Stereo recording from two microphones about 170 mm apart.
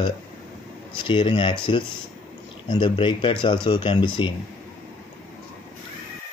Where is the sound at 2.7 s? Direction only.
25° left (ahead or behind).